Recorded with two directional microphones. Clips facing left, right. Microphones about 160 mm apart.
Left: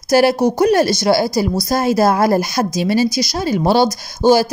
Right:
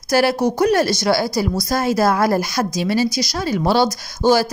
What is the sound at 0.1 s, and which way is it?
A woman's voice, 20° left (ahead or behind).